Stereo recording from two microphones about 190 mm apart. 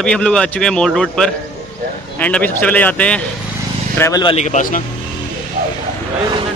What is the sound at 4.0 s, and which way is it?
Speech, 20° left (ahead or behind).